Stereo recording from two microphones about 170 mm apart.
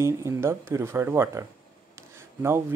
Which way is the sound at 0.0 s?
15° right (ahead or behind).